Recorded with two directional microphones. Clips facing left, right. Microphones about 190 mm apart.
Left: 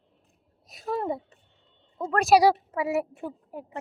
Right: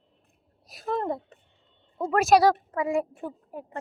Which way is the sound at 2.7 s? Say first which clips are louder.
Right 1 dB; 10° left (ahead or behind).